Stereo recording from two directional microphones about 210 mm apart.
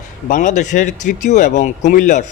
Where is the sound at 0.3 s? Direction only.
35° left (ahead or behind).